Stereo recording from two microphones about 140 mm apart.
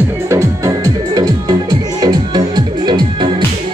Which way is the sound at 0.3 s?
20° right (ahead or behind).